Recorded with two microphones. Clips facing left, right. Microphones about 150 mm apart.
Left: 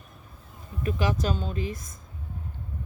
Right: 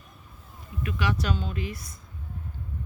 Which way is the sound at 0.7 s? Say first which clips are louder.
Left 1 dB; 40° left (ahead or behind).